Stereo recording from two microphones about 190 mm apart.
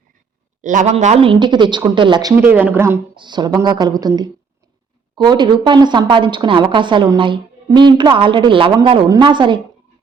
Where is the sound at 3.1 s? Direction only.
25° right (ahead or behind).